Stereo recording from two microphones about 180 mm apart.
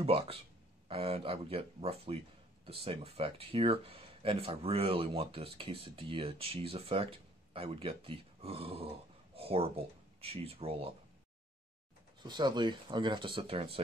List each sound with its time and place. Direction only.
0.0 s speech: 30° right (ahead or behind)
12.2 s speech: 25° right (ahead or behind)